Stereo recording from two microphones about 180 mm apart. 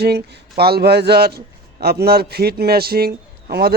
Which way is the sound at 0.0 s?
65° right (ahead or behind).